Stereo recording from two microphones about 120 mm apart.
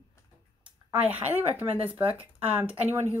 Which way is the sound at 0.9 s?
15° right (ahead or behind).